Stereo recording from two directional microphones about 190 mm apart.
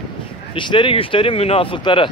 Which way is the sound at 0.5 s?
25° left (ahead or behind).